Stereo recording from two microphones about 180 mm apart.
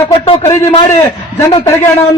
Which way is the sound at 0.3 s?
30° left (ahead or behind).